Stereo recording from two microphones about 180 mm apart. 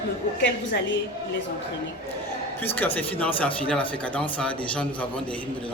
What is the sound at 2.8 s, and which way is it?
A man's voice, 10° left (ahead or behind).